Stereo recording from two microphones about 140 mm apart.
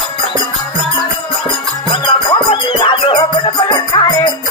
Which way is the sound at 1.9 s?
35° left (ahead or behind).